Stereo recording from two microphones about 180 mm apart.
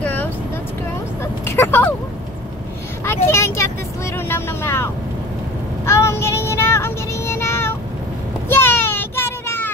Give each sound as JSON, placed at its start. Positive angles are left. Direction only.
{"t": 0.0, "sound": "vehicle", "side_deg": 10}
{"t": 1.4, "sound": "speech", "side_deg": 15}
{"t": 3.1, "sound": "vehicle", "side_deg": 15}
{"t": 5.9, "sound": "child singing", "side_deg": 15}
{"t": 8.5, "sound": "a sound", "side_deg": 10}